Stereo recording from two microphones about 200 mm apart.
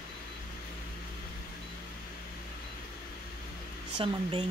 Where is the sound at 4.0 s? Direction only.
25° right (ahead or behind).